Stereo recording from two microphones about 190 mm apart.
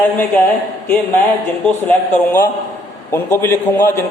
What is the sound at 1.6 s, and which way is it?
A man's voice, 10° left (ahead or behind).